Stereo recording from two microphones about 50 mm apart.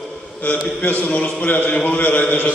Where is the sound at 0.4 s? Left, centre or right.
Left.